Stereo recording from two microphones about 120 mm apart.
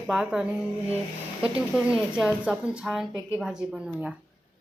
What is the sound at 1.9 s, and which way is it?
A woman's voice, 10° right (ahead or behind).